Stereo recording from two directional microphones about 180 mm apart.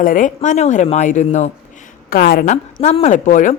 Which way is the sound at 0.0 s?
50° left (ahead or behind).